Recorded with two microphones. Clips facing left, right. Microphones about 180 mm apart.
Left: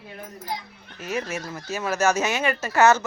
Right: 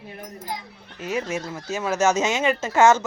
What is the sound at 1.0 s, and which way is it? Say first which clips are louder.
A woman's voice: right 2 dB; 15° right (ahead or behind).